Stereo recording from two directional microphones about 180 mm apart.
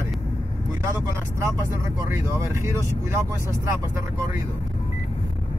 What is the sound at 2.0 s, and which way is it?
Speech, 15° right (ahead or behind).